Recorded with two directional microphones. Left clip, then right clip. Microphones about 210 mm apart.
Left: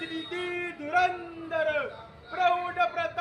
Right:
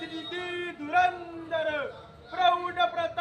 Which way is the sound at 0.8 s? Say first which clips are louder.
Right 1 dB; 50° left (ahead or behind).